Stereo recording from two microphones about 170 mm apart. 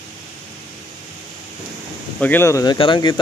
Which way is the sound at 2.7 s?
30° left (ahead or behind).